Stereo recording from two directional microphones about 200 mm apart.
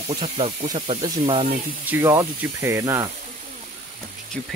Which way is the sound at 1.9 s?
15° right (ahead or behind).